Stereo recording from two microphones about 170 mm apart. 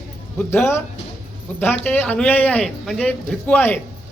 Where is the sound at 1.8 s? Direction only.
10° left (ahead or behind).